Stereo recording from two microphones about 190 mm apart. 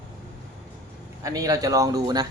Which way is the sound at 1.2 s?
20° right (ahead or behind).